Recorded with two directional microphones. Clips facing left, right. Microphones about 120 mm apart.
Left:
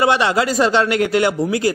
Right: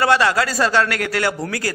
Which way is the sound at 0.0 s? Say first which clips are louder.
Left 1 dB; 20° left (ahead or behind).